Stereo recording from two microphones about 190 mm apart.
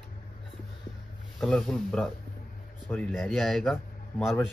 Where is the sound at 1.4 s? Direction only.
Centre (ahead or behind).